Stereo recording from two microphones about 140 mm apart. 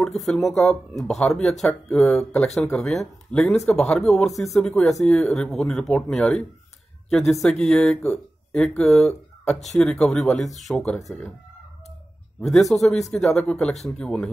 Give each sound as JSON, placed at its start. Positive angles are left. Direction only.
{"t": 0.2, "sound": "speech", "side_deg": 0}
{"t": 12.4, "sound": "speech", "side_deg": 0}